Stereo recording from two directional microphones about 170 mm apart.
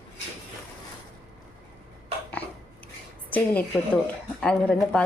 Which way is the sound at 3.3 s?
10° left (ahead or behind).